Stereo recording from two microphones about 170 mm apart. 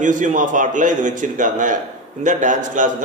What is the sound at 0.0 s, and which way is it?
A man's voice, 50° right (ahead or behind).